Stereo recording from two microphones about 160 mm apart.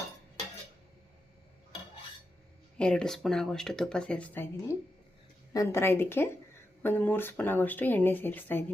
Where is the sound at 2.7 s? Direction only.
5° left (ahead or behind).